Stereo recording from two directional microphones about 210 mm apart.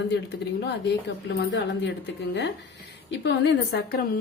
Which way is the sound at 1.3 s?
55° left (ahead or behind).